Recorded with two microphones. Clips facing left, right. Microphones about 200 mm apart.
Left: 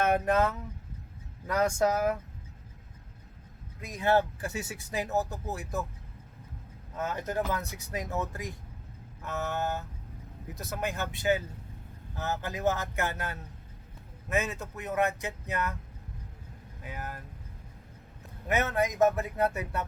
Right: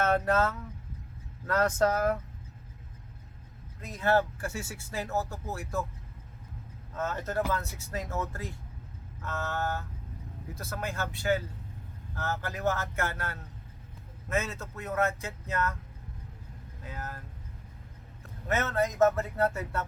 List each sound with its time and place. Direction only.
0.0 s speech: 15° left (ahead or behind)
3.8 s speech: 15° left (ahead or behind)
6.9 s speech: 15° left (ahead or behind)
16.8 s speech: 15° left (ahead or behind)
18.4 s speech: 15° left (ahead or behind)